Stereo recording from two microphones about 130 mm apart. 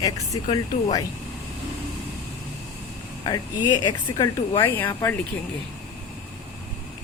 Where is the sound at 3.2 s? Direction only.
35° left (ahead or behind).